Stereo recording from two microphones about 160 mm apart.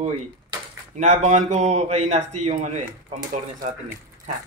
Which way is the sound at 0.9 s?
45° right (ahead or behind).